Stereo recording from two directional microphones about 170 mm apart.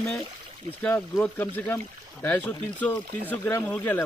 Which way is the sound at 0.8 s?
5° left (ahead or behind).